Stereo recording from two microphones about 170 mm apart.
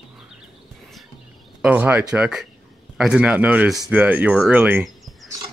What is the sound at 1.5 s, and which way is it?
Speech, 10° right (ahead or behind).